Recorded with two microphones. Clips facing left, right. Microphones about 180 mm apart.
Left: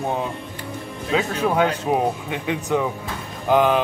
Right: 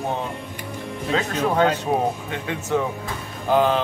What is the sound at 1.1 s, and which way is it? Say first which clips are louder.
Speech: left 1 dB; 10° left (ahead or behind).